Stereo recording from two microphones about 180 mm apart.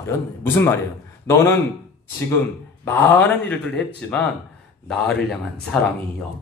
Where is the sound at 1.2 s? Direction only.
15° left (ahead or behind).